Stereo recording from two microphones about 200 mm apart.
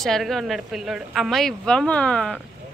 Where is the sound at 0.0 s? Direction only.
Centre (ahead or behind).